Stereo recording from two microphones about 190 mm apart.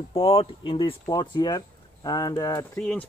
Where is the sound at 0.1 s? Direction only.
30° left (ahead or behind).